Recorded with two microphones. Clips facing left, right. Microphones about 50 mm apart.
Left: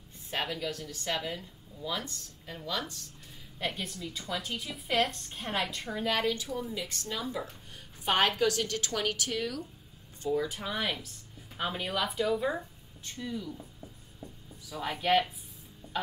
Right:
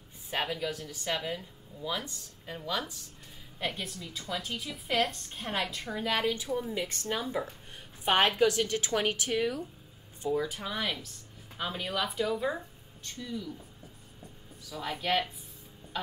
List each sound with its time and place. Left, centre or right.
0.3 s a woman's voice: centre
3.5 s a woman's voice: centre
6.3 s a woman's voice: right
7.2 s a woman's voice: centre
10.3 s a woman's voice: centre
14.7 s speech: centre
15.8 s music: right